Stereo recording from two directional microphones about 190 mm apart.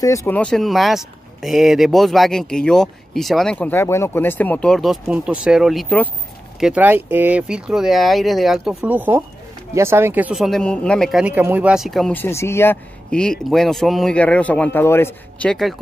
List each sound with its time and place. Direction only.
0.0 s speech: 15° left (ahead or behind)
0.4 s speech: 5° left (ahead or behind)
6.6 s speech: 10° right (ahead or behind)